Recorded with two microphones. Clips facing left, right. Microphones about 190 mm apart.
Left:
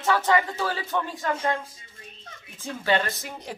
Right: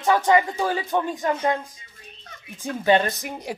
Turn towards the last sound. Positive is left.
turn(degrees=-15)  # may be behind; listen again after turning